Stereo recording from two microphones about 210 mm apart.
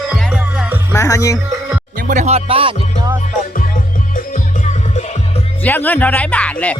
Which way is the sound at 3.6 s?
40° left (ahead or behind).